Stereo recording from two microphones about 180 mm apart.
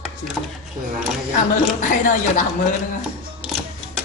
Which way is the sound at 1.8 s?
45° left (ahead or behind).